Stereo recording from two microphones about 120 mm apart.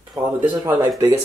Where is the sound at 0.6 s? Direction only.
35° right (ahead or behind).